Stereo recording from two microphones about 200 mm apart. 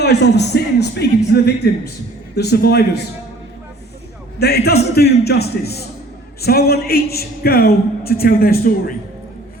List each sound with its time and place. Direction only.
0.0 s speech: 55° left (ahead or behind)
4.4 s a man's voice: 55° left (ahead or behind)